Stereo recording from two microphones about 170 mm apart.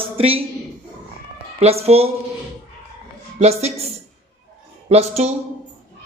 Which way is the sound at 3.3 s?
40° right (ahead or behind).